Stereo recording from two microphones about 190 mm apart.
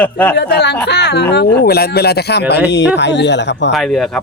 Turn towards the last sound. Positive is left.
turn(degrees=0)  # may be behind; listen again after turning